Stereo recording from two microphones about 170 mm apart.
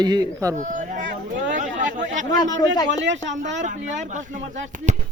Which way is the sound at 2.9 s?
90° right.